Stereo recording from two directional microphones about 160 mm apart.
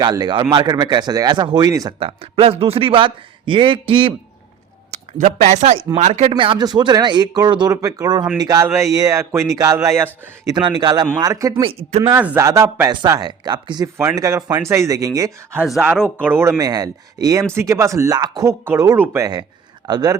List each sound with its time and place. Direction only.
0.0 s speech: 25° right (ahead or behind)
2.0 s a man's voice: 35° right (ahead or behind)
4.9 s speech: 50° right (ahead or behind); by 10.5 s 15° right (ahead or behind)
10.5 s speech: 30° right (ahead or behind)
11.6 s a man's voice: 40° right (ahead or behind)
12.1 s speech: 10° right (ahead or behind)
12.9 s speech: 25° right (ahead or behind)
13.8 s speech: 15° right (ahead or behind)
15.6 s speech: 5° right (ahead or behind); by 20.1 s 25° right (ahead or behind)